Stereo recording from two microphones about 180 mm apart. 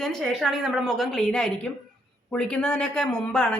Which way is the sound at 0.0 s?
Centre (ahead or behind).